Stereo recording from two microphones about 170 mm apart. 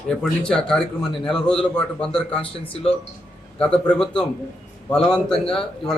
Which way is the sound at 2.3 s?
35° left (ahead or behind).